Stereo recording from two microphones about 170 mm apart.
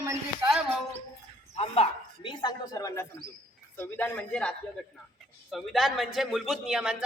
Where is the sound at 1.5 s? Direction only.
35° left (ahead or behind).